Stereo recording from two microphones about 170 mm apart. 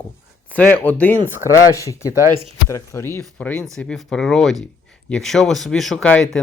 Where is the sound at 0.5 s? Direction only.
10° left (ahead or behind).